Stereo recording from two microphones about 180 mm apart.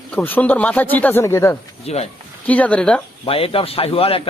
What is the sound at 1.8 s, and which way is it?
Speech, 35° left (ahead or behind).